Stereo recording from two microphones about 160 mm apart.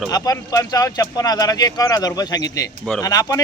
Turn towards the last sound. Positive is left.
turn(degrees=20)  # may be behind; listen again after turning